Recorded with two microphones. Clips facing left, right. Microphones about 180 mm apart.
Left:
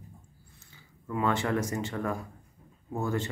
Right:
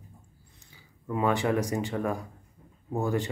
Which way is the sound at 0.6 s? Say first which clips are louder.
Even; 15° right (ahead or behind).